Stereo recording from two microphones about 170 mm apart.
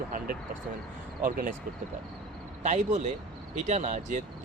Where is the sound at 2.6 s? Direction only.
45° right (ahead or behind).